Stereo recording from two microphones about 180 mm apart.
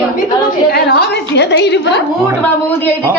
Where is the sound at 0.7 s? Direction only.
60° left (ahead or behind).